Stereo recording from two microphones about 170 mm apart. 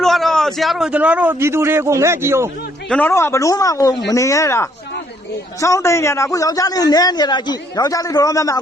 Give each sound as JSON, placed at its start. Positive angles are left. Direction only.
{"t": 0.0, "sound": "a man's voice", "side_deg": 0}
{"t": 2.9, "sound": "a man's voice", "side_deg": 15}